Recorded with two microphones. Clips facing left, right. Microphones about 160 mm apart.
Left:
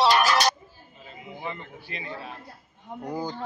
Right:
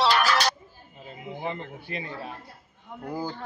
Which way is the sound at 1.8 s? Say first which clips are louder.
Even; 50° right (ahead or behind).